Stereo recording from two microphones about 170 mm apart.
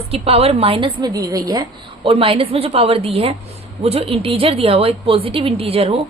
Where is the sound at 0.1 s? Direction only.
35° right (ahead or behind).